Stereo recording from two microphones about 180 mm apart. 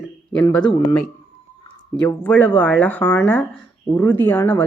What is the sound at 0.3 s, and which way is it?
Speech, 10° left (ahead or behind).